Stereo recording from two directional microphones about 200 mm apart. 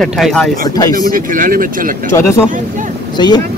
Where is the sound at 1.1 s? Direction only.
45° right (ahead or behind).